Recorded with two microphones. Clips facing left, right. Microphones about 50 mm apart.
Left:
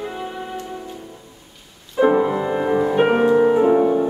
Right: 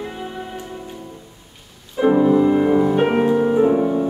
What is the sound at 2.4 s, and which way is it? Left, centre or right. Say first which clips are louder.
Music: right 4 dB; centre.